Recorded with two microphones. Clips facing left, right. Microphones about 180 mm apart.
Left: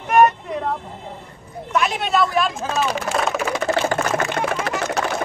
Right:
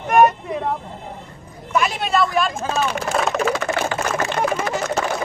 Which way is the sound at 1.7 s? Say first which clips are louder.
Even; centre (ahead or behind).